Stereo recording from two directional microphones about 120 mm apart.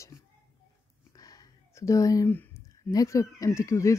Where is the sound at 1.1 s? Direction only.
30° left (ahead or behind).